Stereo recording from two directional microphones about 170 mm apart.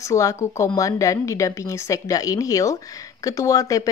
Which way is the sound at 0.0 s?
15° left (ahead or behind).